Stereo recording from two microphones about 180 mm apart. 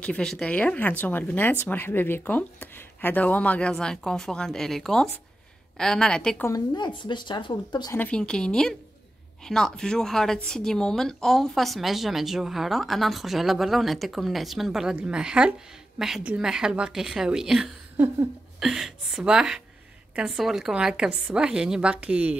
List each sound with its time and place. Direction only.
0.0 s speech: 5° left (ahead or behind)
6.7 s speech: 25° left (ahead or behind)
7.9 s speech: 10° left (ahead or behind); by 22.3 s 5° right (ahead or behind)